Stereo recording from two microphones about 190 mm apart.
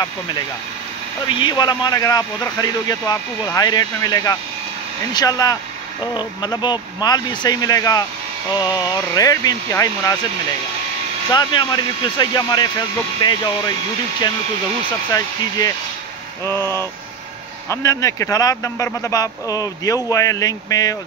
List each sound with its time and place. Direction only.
0.0 s speech: 20° left (ahead or behind)
11.3 s speech: 20° left (ahead or behind)
17.6 s speech: 15° left (ahead or behind)